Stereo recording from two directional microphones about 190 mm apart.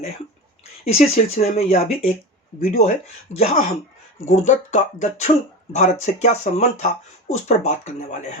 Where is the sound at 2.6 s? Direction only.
50° left (ahead or behind).